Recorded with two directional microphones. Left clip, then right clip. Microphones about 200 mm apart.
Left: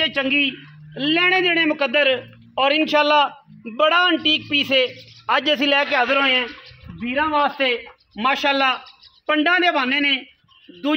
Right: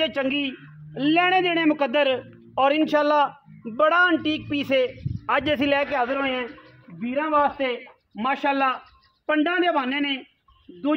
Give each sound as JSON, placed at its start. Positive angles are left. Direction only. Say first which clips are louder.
{"t": 0.0, "sound": "speech", "louder": "left 5 dB", "side_deg": -45}
{"t": 2.5, "sound": "a man's voice", "louder": "left 3 dB", "side_deg": -15}
{"t": 6.0, "sound": "a man's voice", "louder": "left 8 dB", "side_deg": 25}